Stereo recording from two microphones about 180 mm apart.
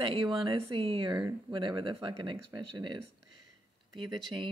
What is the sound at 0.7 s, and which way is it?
Speech, 30° right (ahead or behind).